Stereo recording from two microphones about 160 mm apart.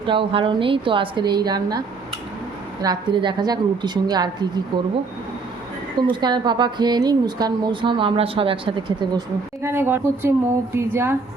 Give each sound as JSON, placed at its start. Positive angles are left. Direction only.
{"t": 0.0, "sound": "a woman's voice", "side_deg": -30}
{"t": 2.8, "sound": "a woman's voice", "side_deg": -25}
{"t": 6.0, "sound": "a woman's voice", "side_deg": -30}
{"t": 9.6, "sound": "speech", "side_deg": -15}